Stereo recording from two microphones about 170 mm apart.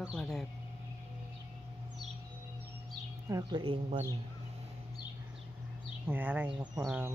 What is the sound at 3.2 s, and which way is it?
Speech, 20° right (ahead or behind).